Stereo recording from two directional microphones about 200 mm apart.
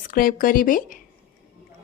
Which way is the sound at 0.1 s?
45° left (ahead or behind).